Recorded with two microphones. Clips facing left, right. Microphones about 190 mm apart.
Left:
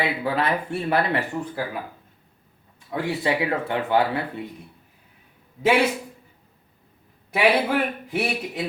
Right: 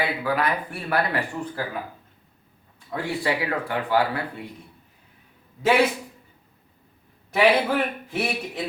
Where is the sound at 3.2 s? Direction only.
25° left (ahead or behind).